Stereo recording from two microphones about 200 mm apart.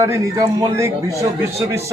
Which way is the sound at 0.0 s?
15° right (ahead or behind).